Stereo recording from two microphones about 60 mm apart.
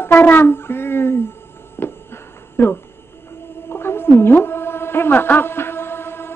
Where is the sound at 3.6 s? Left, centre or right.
Left.